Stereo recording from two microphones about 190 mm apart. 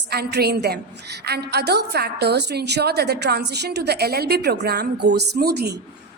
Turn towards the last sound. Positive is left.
turn(degrees=-55)  # may be behind; listen again after turning